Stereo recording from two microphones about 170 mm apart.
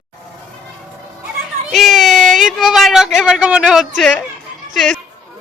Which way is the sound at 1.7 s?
Centre (ahead or behind).